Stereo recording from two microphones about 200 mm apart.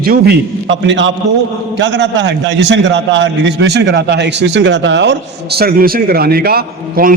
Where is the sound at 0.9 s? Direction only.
65° right (ahead or behind).